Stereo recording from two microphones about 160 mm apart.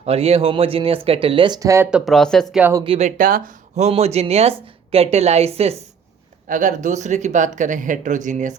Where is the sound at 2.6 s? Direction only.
10° right (ahead or behind).